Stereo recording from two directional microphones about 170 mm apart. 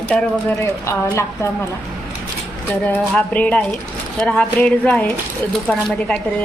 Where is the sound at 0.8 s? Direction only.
15° left (ahead or behind).